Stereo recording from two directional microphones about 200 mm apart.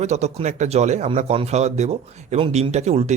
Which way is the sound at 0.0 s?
35° right (ahead or behind).